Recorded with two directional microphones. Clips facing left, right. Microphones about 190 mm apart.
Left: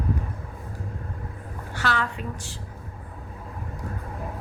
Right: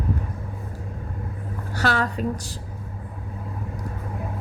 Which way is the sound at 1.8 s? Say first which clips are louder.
Right 4 dB; 40° right (ahead or behind).